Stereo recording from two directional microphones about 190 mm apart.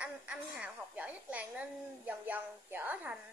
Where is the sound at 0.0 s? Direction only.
5° right (ahead or behind).